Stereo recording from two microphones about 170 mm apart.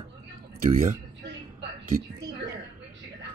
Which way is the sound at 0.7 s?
90° right.